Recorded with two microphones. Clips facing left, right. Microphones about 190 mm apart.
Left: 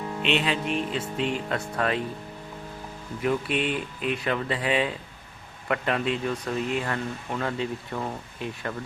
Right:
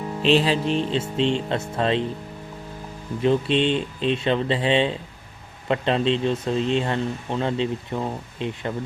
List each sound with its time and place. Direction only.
0.2 s music: 35° right (ahead or behind)
1.1 s speech: 25° right (ahead or behind)
3.2 s speech: 25° right (ahead or behind)